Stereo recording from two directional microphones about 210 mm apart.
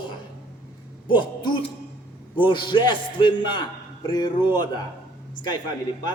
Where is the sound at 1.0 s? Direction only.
25° left (ahead or behind).